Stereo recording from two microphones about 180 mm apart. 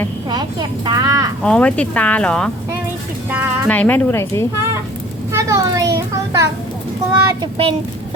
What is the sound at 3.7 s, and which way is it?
Speech, 10° left (ahead or behind).